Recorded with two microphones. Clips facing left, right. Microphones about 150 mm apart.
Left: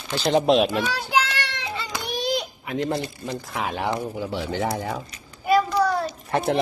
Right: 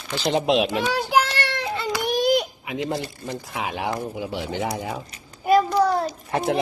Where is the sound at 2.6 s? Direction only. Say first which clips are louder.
Left 1 dB; 5° right (ahead or behind).